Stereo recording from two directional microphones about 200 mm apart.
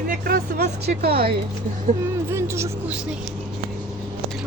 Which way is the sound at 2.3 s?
15° right (ahead or behind).